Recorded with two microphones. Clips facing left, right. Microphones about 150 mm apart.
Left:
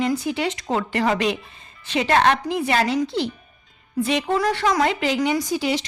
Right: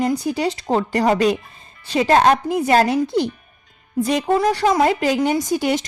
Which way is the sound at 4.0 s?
45° right (ahead or behind).